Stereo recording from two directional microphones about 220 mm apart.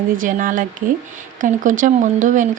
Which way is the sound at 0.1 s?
35° right (ahead or behind).